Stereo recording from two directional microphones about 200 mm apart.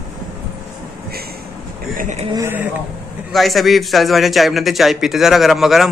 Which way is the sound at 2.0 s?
35° right (ahead or behind).